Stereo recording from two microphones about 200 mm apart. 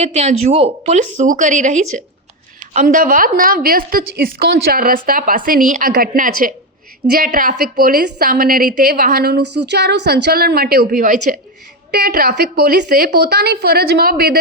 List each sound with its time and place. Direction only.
0.0 s a woman's voice: 35° right (ahead or behind)
11.9 s a woman's voice: 50° right (ahead or behind)